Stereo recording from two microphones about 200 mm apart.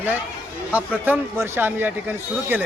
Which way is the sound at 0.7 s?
10° right (ahead or behind).